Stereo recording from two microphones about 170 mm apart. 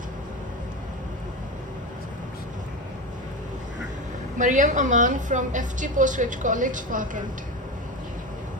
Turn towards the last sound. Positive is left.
turn(degrees=-50)  # may be behind; listen again after turning